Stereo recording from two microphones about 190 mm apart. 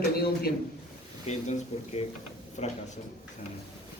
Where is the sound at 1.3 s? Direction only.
35° left (ahead or behind).